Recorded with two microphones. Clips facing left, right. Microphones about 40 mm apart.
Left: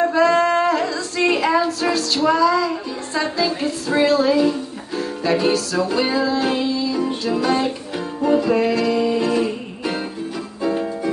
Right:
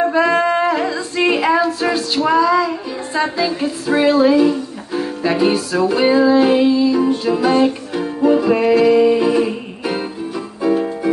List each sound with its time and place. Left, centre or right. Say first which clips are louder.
0.0 s female singing: right 1 dB; centre
1.7 s music: right 2 dB; centre
8.5 s music: right 5 dB; centre